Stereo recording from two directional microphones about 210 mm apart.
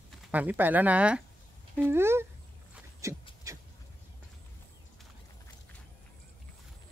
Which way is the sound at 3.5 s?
15° right (ahead or behind).